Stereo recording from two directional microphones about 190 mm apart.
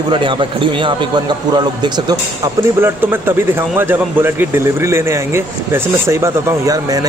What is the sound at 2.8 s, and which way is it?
Speech, 10° right (ahead or behind).